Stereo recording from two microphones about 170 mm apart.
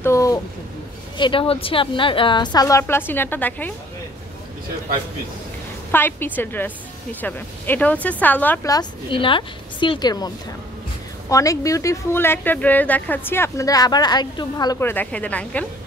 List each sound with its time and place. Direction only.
0.0 s a sound: 20° left (ahead or behind)
1.1 s speech: 30° left (ahead or behind); by 3.7 s 10° left (ahead or behind)
5.9 s a woman's voice: 10° left (ahead or behind)
8.6 s speech: 25° left (ahead or behind)
14.8 s a woman's voice: 10° left (ahead or behind)